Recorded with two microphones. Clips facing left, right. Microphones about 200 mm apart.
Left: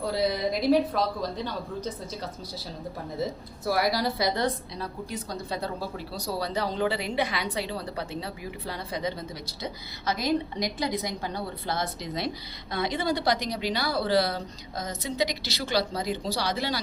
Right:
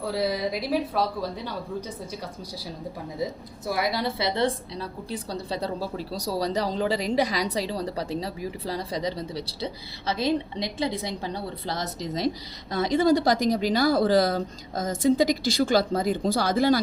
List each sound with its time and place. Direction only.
0.1 s a woman's voice: 5° right (ahead or behind)
3.7 s a woman's voice: 20° right (ahead or behind); by 16.8 s 50° right (ahead or behind)